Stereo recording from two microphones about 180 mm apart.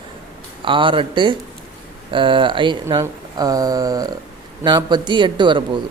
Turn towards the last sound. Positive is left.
turn(degrees=-25)  # may be behind; listen again after turning